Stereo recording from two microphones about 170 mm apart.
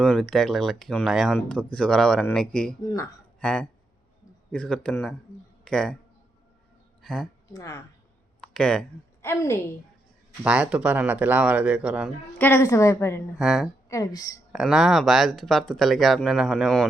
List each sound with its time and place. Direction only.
0.0 s speech: 5° left (ahead or behind)
7.0 s a woman's voice: centre (ahead or behind)
7.5 s a woman's voice: 20° left (ahead or behind)
8.4 s a sound: 5° left (ahead or behind)
9.2 s a woman's voice: 15° left (ahead or behind)
10.4 s speech: 5° right (ahead or behind)
12.4 s a woman's voice: 15° left (ahead or behind)
13.4 s speech: centre (ahead or behind)
13.8 s speech: 20° left (ahead or behind)
14.5 s speech: 5° right (ahead or behind)